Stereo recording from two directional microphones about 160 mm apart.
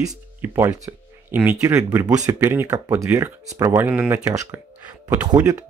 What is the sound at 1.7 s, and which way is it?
Speech, 20° right (ahead or behind).